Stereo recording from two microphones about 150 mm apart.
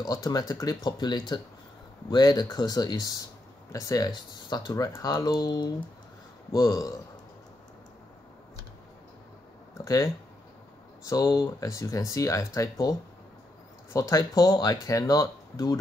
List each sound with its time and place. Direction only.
0.0 s speech: 25° left (ahead or behind)
9.8 s speech: 20° left (ahead or behind)
13.9 s speech: 20° left (ahead or behind)